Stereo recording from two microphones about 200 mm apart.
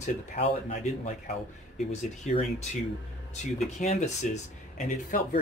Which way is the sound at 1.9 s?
35° left (ahead or behind).